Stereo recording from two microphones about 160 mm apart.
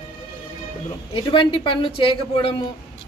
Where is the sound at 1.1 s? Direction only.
30° left (ahead or behind).